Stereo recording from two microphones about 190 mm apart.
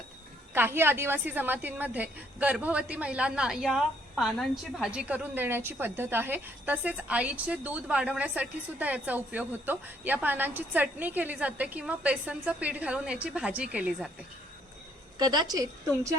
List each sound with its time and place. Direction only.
0.5 s a woman's voice: 10° right (ahead or behind)
15.2 s a woman's voice: 20° right (ahead or behind)